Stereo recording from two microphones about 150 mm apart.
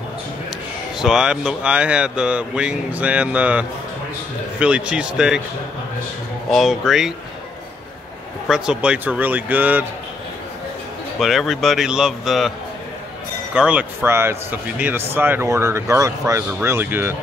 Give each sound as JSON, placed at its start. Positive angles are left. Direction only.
{"t": 0.9, "sound": "a man's voice", "side_deg": -5}
{"t": 6.5, "sound": "speech", "side_deg": 0}
{"t": 8.5, "sound": "a man's voice", "side_deg": -5}
{"t": 11.1, "sound": "speech", "side_deg": 0}
{"t": 13.6, "sound": "a man's voice", "side_deg": -10}